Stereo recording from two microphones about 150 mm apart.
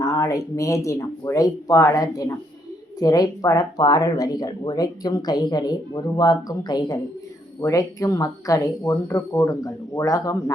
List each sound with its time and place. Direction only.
0.0 s speech: 25° left (ahead or behind)